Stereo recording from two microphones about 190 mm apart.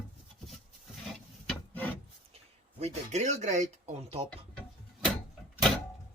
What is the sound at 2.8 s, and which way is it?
Speech, 35° right (ahead or behind).